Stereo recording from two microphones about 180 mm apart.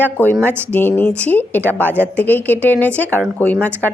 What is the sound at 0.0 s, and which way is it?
Speech, 10° left (ahead or behind).